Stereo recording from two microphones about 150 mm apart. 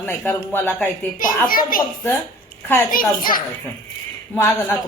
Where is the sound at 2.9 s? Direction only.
70° left (ahead or behind).